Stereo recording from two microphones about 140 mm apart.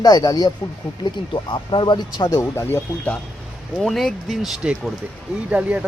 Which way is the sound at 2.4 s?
20° left (ahead or behind).